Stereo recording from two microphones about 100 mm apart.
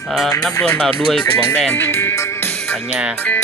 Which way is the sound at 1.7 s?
20° left (ahead or behind).